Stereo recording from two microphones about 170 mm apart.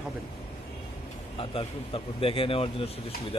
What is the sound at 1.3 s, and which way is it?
Speech, 35° left (ahead or behind).